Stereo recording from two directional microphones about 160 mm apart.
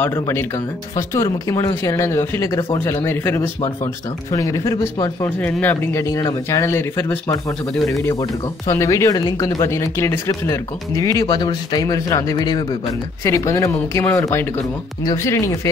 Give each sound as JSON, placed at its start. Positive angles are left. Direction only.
{"t": 0.0, "sound": "speech", "side_deg": 15}
{"t": 5.4, "sound": "speech", "side_deg": 10}
{"t": 7.7, "sound": "speech", "side_deg": 0}
{"t": 8.0, "sound": "speech", "side_deg": 20}